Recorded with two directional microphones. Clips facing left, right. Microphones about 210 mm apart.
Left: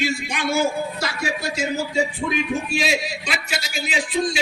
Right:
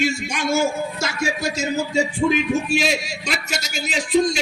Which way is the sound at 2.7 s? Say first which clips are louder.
Right 1 dB; 45° right (ahead or behind).